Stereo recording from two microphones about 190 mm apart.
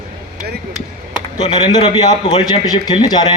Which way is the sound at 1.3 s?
20° left (ahead or behind).